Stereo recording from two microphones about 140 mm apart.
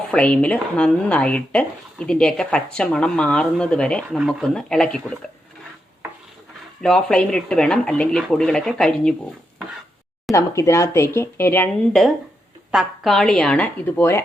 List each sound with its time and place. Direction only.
0.1 s speech: 10° left (ahead or behind)
6.8 s speech: 5° left (ahead or behind)
10.3 s speech: 20° left (ahead or behind)
12.7 s speech: centre (ahead or behind); by 14.2 s 15° left (ahead or behind)